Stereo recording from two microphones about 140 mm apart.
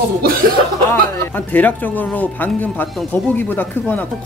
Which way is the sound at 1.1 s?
15° left (ahead or behind).